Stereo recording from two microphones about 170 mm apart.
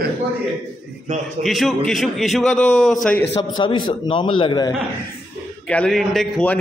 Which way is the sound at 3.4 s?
25° left (ahead or behind).